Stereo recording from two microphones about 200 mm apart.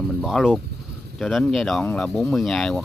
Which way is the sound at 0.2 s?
Centre (ahead or behind).